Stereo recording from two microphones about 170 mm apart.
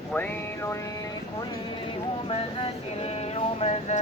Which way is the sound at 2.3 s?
35° left (ahead or behind).